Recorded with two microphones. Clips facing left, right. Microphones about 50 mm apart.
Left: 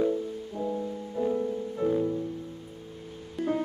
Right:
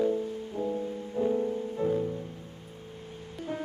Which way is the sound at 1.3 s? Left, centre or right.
Centre.